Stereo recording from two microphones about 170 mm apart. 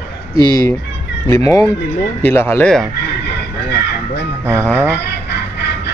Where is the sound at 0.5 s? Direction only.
15° left (ahead or behind).